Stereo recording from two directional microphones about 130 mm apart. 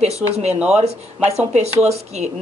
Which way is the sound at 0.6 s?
10° right (ahead or behind).